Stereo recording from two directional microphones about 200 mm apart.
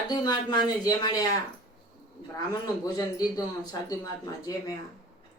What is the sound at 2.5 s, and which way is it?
Speech, 20° left (ahead or behind).